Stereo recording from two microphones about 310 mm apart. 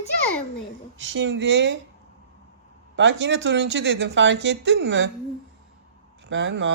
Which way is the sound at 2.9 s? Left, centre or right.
Right.